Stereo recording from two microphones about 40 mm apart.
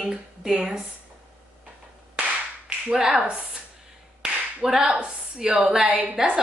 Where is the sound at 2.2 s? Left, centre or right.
Right.